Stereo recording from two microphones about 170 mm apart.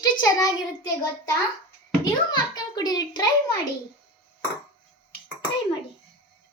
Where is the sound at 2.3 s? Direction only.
25° left (ahead or behind).